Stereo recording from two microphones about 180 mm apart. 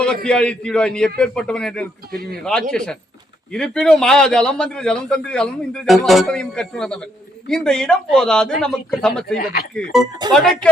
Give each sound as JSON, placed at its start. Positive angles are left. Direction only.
{"t": 0.0, "sound": "a man's voice", "side_deg": 5}
{"t": 9.4, "sound": "speech", "side_deg": 55}
{"t": 9.7, "sound": "a man's voice", "side_deg": 0}